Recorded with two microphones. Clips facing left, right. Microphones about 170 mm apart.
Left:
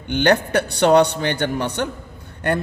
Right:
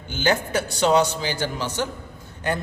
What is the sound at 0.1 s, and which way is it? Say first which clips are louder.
A man's voice: left 6 dB; 65° left (ahead or behind).